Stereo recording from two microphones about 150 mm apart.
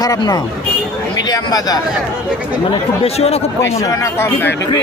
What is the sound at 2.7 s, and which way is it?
Speech, 40° left (ahead or behind).